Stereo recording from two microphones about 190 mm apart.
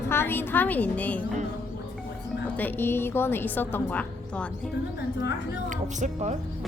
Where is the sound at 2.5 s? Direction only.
10° left (ahead or behind).